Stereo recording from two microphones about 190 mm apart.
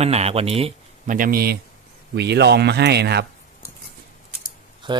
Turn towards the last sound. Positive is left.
turn(degrees=-25)  # may be behind; listen again after turning